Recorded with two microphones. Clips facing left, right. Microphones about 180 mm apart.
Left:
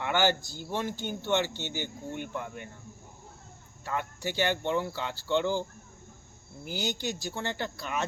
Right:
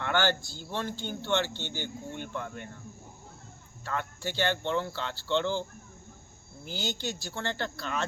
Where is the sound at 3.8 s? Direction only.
15° left (ahead or behind).